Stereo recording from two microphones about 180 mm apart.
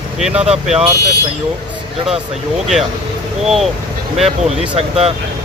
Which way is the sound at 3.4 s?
Centre (ahead or behind).